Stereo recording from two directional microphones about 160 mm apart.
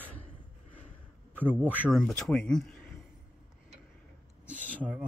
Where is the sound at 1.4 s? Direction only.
10° right (ahead or behind).